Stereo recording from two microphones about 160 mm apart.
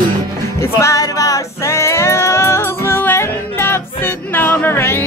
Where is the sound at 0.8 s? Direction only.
20° left (ahead or behind).